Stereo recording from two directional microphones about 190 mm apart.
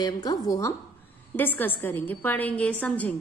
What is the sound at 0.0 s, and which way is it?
A woman's voice, 20° left (ahead or behind).